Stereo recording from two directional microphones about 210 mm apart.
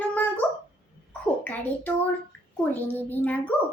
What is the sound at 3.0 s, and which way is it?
Speech, 10° left (ahead or behind).